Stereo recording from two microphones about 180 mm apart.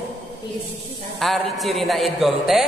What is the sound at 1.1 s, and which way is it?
A man's voice, centre (ahead or behind).